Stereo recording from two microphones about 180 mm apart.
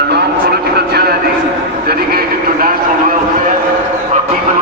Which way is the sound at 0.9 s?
60° right (ahead or behind).